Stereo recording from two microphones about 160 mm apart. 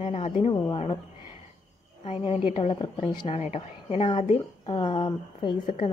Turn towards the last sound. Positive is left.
turn(degrees=30)  # may be behind; listen again after turning